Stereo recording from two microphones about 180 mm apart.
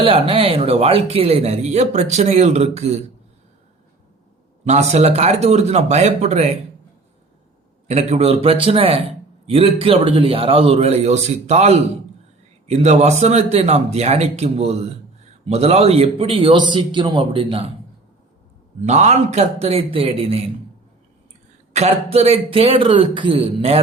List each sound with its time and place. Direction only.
0.0 s speech: 30° right (ahead or behind)
4.6 s speech: 40° right (ahead or behind)
7.9 s a man's voice: 35° right (ahead or behind)
18.8 s speech: 40° right (ahead or behind)
21.7 s speech: 35° right (ahead or behind)